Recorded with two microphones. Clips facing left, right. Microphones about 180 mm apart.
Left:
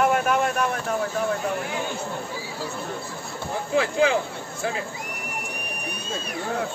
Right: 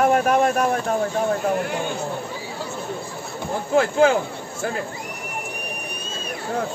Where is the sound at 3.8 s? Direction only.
45° right (ahead or behind).